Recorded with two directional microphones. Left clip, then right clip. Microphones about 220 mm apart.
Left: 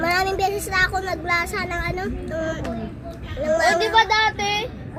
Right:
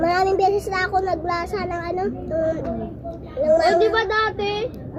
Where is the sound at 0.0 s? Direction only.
5° left (ahead or behind).